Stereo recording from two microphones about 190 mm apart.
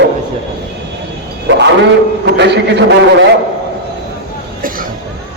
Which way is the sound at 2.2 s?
60° right (ahead or behind).